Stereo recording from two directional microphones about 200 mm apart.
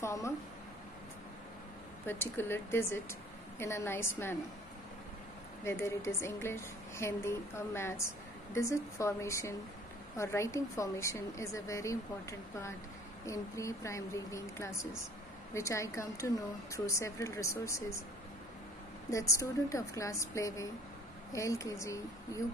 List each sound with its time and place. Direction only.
0.0 s a sound: 15° left (ahead or behind)
2.0 s a woman's voice: 10° left (ahead or behind)
5.6 s a woman's voice: 10° left (ahead or behind)
19.0 s a woman's voice: 15° left (ahead or behind)